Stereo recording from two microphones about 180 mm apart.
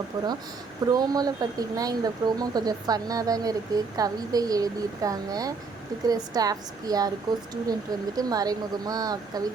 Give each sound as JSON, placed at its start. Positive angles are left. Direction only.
{"t": 0.1, "sound": "speech", "side_deg": -20}